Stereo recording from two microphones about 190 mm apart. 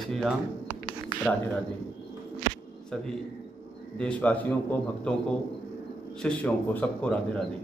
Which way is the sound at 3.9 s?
5° left (ahead or behind).